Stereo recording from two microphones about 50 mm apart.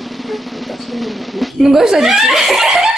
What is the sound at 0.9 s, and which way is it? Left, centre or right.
Speech, centre.